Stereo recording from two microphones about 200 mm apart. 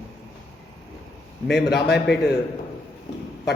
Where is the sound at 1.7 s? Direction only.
55° left (ahead or behind).